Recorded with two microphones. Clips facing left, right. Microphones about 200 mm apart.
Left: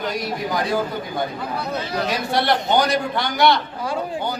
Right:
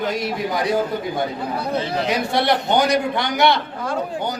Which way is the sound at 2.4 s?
20° right (ahead or behind).